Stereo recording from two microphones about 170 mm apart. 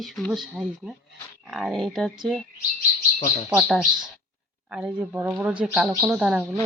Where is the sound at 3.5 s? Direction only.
Centre (ahead or behind).